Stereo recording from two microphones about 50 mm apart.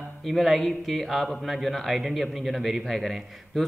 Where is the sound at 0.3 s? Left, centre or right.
Centre.